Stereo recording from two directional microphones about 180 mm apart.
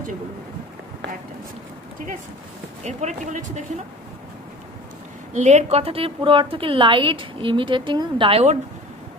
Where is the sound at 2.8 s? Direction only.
45° right (ahead or behind).